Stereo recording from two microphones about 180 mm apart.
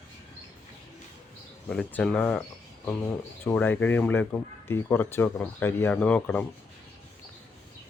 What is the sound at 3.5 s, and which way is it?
Speech, 10° left (ahead or behind).